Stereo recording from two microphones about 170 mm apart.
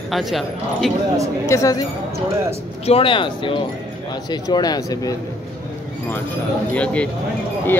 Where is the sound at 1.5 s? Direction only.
20° left (ahead or behind).